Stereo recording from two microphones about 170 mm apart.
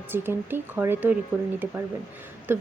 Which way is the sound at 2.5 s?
10° right (ahead or behind).